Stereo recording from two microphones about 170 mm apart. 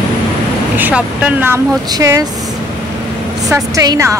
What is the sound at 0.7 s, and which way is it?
Speech, 10° right (ahead or behind).